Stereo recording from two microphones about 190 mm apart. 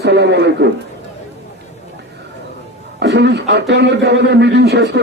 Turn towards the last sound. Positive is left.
turn(degrees=-60)  # may be behind; listen again after turning